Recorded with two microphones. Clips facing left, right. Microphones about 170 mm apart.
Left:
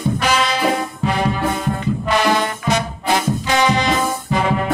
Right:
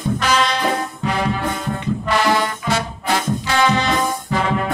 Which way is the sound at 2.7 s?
15° left (ahead or behind).